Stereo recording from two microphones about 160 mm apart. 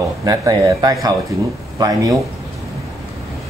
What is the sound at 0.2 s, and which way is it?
Speech, 25° right (ahead or behind).